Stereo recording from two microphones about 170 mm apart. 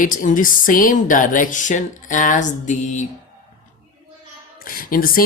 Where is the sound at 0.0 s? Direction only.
50° left (ahead or behind).